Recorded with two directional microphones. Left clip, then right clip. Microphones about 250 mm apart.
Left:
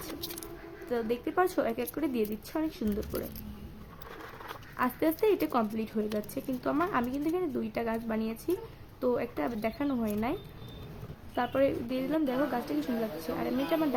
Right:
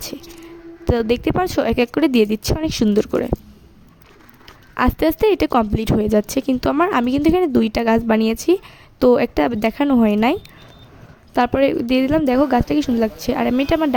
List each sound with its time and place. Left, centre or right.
0.9 s a woman's voice: right
4.8 s a woman's voice: right
11.3 s a woman's voice: right